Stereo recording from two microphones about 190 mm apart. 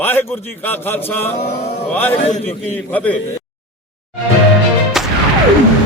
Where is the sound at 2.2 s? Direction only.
35° left (ahead or behind).